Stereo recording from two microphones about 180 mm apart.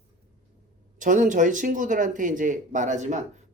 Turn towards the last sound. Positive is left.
turn(degrees=-40)  # may be behind; listen again after turning